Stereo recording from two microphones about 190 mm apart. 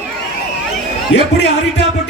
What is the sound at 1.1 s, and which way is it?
Speech, 65° left (ahead or behind).